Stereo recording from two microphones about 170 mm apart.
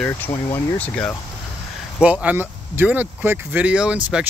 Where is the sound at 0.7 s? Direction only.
10° left (ahead or behind).